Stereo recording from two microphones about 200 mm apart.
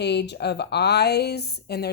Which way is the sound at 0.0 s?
55° left (ahead or behind).